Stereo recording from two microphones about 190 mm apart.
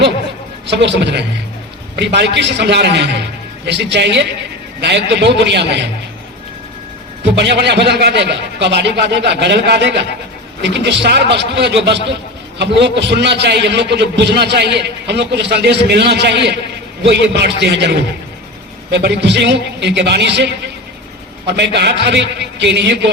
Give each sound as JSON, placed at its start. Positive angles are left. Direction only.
{"t": 0.7, "sound": "a man's voice", "side_deg": -65}
{"t": 7.3, "sound": "a man's voice", "side_deg": -65}